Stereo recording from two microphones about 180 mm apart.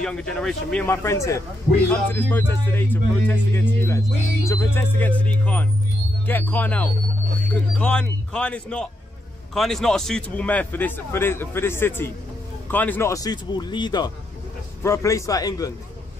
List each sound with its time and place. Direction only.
0.0 s speech: 5° left (ahead or behind)
0.8 s a man's voice: 15° left (ahead or behind)